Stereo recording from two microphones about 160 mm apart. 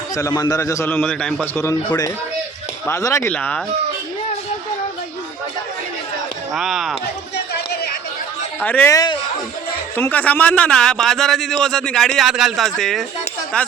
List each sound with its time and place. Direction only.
0.2 s a man's voice: 20° left (ahead or behind); by 1.5 s 5° left (ahead or behind)
1.5 s speech: 15° left (ahead or behind)
3.3 s speech: 5° left (ahead or behind)
6.5 s a man's voice: centre (ahead or behind)
7.3 s a sound: 90° left
8.6 s a man's voice: 10° left (ahead or behind)